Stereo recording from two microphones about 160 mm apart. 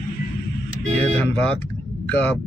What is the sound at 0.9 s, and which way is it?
Speech, 10° left (ahead or behind).